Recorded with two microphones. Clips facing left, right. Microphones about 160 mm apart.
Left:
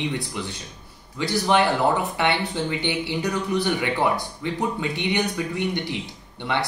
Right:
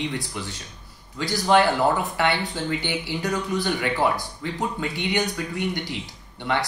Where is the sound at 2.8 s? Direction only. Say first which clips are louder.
Left 2 dB; 25° left (ahead or behind).